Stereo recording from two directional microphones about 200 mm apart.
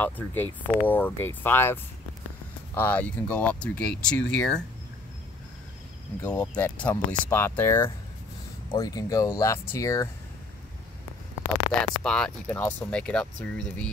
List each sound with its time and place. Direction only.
0.0 s speech: 10° left (ahead or behind)
6.2 s speech: 10° left (ahead or behind)
12.0 s speech: 5° left (ahead or behind)